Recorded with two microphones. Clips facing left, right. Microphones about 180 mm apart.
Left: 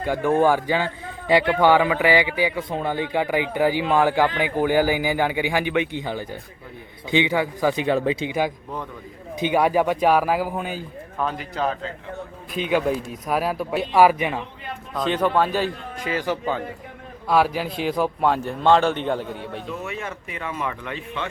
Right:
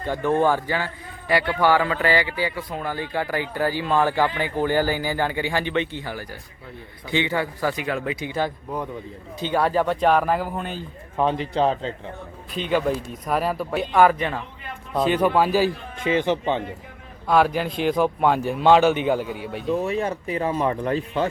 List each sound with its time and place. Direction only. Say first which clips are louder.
0.0 s a man's voice: left 2 dB; 10° left (ahead or behind); by 8.3 s 25° left (ahead or behind)
8.3 s speech: left 1 dB; 10° left (ahead or behind)
11.2 s a man's voice: right 5 dB; 30° right (ahead or behind)
12.5 s a man's voice: left 1 dB; 5° left (ahead or behind)
14.9 s a man's voice: right 2 dB; 5° right (ahead or behind)
16.0 s a man's voice: right 4 dB; 20° right (ahead or behind)
17.2 s a man's voice: right 1 dB; 5° left (ahead or behind)
19.7 s speech: right 12 dB; 35° right (ahead or behind)